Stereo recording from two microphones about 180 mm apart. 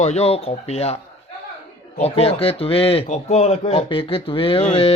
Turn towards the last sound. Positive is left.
turn(degrees=35)  # may be behind; listen again after turning